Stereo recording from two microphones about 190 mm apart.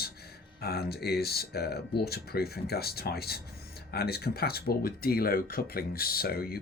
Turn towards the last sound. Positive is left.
turn(degrees=55)  # may be behind; listen again after turning